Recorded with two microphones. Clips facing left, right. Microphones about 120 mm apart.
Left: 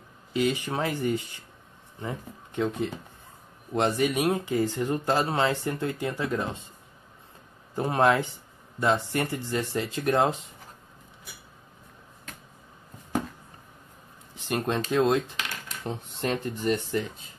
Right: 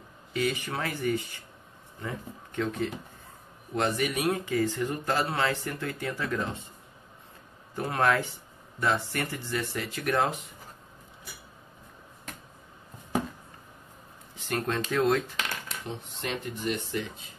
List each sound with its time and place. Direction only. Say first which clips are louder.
0.3 s speech: left 3 dB; 20° left (ahead or behind)
7.7 s speech: left 3 dB; 20° left (ahead or behind)
14.3 s a sound: left 2 dB; 20° left (ahead or behind)
14.9 s speech: left 2 dB; 15° left (ahead or behind)
15.8 s speech: left 10 dB; 40° left (ahead or behind)